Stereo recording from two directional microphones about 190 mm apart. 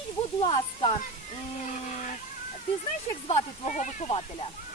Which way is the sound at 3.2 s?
35° left (ahead or behind).